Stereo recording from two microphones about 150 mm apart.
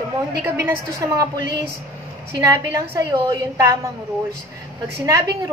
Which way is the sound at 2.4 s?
20° right (ahead or behind).